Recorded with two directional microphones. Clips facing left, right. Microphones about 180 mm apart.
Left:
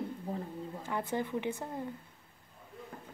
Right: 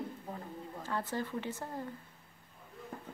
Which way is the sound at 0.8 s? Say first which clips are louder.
Left 2 dB; 15° left (ahead or behind).